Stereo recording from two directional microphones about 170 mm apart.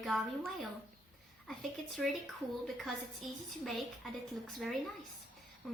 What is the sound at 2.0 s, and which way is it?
A woman's voice, centre (ahead or behind).